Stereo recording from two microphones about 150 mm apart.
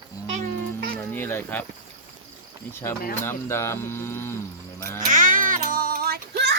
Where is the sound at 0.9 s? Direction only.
10° left (ahead or behind).